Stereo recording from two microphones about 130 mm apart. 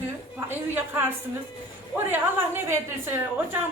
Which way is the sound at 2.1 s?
15° right (ahead or behind).